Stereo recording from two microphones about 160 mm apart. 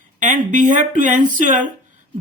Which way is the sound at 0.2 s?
50° right (ahead or behind).